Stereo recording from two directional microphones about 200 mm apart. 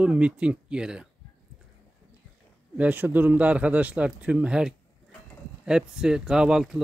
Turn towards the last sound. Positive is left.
turn(degrees=-5)  # may be behind; listen again after turning